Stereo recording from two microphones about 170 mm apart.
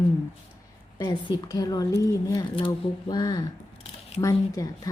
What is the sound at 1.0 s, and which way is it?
A woman's voice, 25° left (ahead or behind).